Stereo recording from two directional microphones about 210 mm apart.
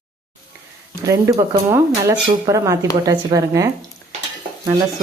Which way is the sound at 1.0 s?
15° right (ahead or behind).